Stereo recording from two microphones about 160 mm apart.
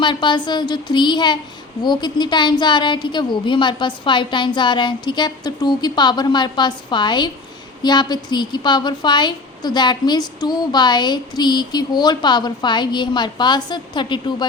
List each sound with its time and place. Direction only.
0.0 s a woman's voice: 30° left (ahead or behind)